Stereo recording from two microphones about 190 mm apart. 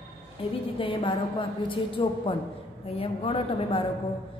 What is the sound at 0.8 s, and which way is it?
A woman's voice, 25° left (ahead or behind).